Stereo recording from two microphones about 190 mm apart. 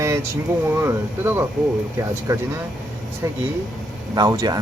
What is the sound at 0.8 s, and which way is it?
Speech, 10° right (ahead or behind).